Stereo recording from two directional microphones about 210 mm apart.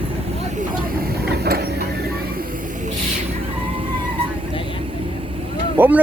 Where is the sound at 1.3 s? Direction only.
50° right (ahead or behind).